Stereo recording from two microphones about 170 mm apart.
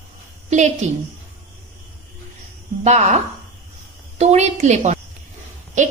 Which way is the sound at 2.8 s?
40° right (ahead or behind).